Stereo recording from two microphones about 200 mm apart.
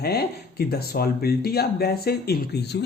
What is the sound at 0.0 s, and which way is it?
Speech, 50° left (ahead or behind).